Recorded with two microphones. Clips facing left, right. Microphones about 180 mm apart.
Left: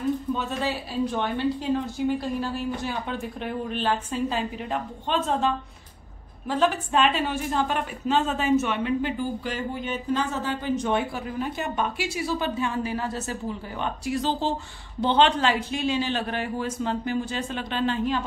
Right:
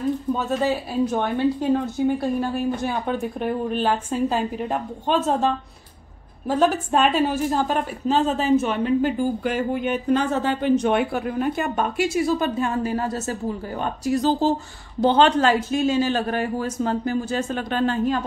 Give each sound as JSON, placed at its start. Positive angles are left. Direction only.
{"t": 0.3, "sound": "a woman's voice", "side_deg": -45}
{"t": 9.4, "sound": "a woman's voice", "side_deg": -55}